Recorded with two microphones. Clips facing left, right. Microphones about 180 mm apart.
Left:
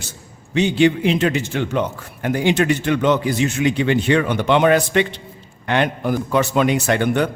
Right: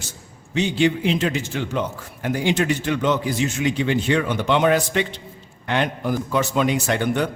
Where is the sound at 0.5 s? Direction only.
60° left (ahead or behind).